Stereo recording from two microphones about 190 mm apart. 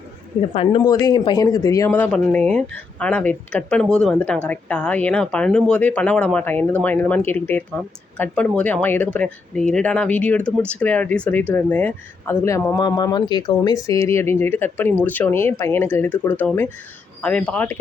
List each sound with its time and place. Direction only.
0.5 s speech: 30° left (ahead or behind)
0.8 s speech: 20° left (ahead or behind)